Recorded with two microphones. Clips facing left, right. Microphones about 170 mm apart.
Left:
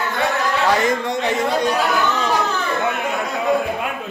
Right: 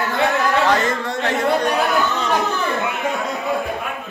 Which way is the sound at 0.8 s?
15° left (ahead or behind).